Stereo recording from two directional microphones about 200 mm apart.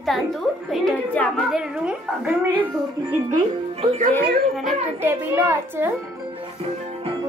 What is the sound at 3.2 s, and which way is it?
Speech, 35° right (ahead or behind).